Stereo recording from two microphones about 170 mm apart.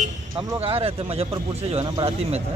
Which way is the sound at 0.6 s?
35° right (ahead or behind).